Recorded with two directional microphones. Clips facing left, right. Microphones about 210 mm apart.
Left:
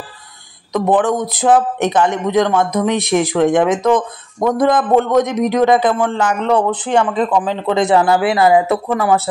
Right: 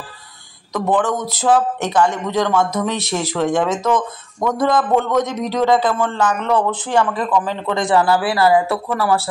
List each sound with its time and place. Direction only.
0.7 s speech: 20° left (ahead or behind)